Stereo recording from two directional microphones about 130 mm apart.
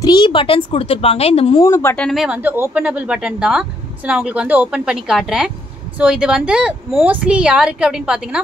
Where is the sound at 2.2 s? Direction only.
10° right (ahead or behind).